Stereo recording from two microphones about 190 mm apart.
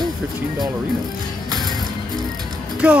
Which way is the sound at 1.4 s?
20° right (ahead or behind).